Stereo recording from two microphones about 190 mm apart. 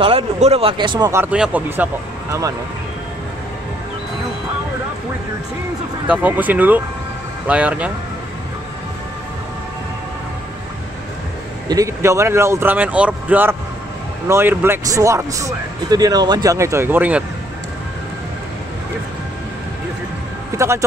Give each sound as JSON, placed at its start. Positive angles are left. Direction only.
{"t": 0.0, "sound": "speech", "side_deg": -30}
{"t": 1.2, "sound": "speech", "side_deg": -5}
{"t": 6.0, "sound": "speech", "side_deg": -10}
{"t": 11.7, "sound": "speech", "side_deg": -15}
{"t": 20.5, "sound": "speech", "side_deg": -15}